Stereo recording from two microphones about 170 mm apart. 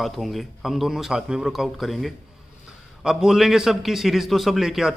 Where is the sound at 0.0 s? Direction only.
Centre (ahead or behind).